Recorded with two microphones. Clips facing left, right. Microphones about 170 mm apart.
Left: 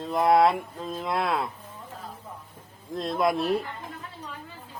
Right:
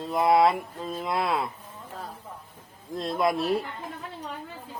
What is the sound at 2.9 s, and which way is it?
Speech, centre (ahead or behind).